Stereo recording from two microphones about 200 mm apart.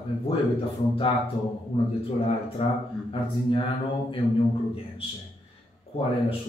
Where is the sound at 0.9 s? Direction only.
25° left (ahead or behind).